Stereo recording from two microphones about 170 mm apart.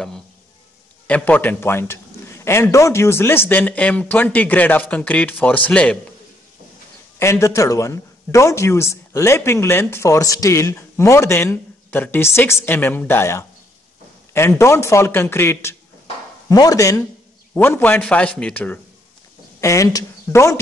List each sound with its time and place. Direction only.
1.0 s speech: 10° left (ahead or behind)
7.2 s speech: 15° left (ahead or behind)
14.6 s speech: 15° left (ahead or behind)